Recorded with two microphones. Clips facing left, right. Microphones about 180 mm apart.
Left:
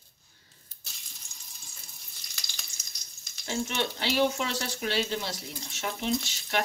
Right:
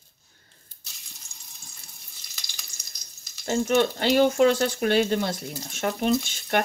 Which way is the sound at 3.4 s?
50° right (ahead or behind).